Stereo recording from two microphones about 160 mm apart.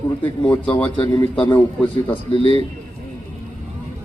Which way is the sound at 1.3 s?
30° left (ahead or behind).